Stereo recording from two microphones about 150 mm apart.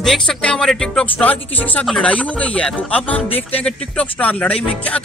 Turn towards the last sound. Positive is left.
turn(degrees=10)  # may be behind; listen again after turning